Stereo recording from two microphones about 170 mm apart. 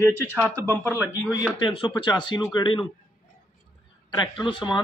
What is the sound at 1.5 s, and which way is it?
Speech, 30° left (ahead or behind).